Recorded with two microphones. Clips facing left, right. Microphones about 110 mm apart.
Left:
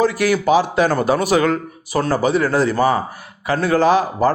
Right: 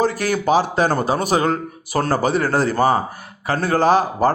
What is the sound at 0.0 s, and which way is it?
Speech, 40° right (ahead or behind).